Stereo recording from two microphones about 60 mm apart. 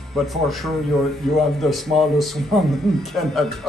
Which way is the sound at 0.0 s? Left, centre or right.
Centre.